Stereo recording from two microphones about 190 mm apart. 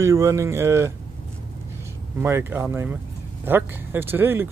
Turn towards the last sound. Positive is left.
turn(degrees=-10)  # may be behind; listen again after turning